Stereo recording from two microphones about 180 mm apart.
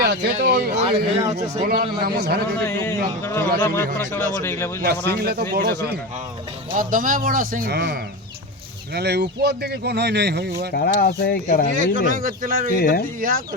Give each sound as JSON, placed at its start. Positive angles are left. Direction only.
{"t": 0.0, "sound": "speech", "side_deg": -65}
{"t": 0.9, "sound": "a man's voice", "side_deg": -35}
{"t": 1.6, "sound": "speech", "side_deg": -60}
{"t": 2.6, "sound": "speech", "side_deg": 10}
{"t": 4.8, "sound": "speech", "side_deg": -60}
{"t": 6.7, "sound": "speech", "side_deg": -50}
{"t": 10.8, "sound": "speech", "side_deg": 60}
{"t": 11.8, "sound": "speech", "side_deg": -50}
{"t": 12.7, "sound": "speech", "side_deg": 60}
{"t": 13.1, "sound": "speech", "side_deg": -50}